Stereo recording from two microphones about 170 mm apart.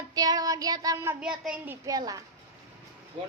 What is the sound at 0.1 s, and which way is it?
Child singing, 20° right (ahead or behind).